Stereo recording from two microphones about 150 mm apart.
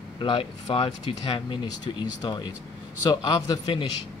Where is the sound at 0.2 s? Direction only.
35° left (ahead or behind).